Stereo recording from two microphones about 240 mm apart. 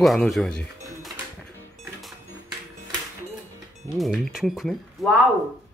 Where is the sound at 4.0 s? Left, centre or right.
Centre.